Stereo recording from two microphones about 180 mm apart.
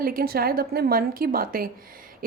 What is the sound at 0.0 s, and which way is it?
A woman's voice, 55° right (ahead or behind).